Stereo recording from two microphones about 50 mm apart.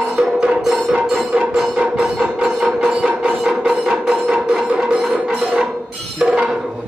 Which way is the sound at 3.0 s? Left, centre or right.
Centre.